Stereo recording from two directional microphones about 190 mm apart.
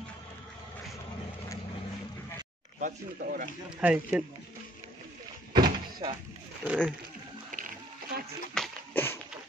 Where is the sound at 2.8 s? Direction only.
50° right (ahead or behind).